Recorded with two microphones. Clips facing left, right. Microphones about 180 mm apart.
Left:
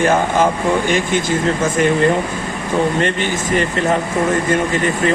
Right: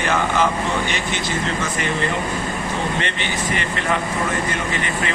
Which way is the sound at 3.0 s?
45° left (ahead or behind).